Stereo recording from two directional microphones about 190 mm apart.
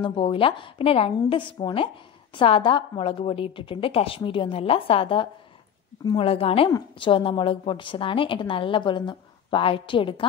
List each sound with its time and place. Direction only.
0.0 s a woman's voice: 25° left (ahead or behind)